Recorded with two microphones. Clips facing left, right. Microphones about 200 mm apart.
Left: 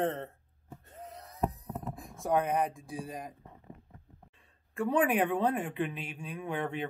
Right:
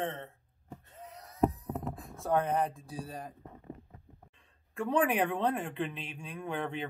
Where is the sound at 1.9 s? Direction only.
15° left (ahead or behind).